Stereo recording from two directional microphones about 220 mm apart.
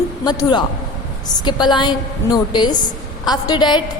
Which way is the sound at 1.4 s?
20° left (ahead or behind).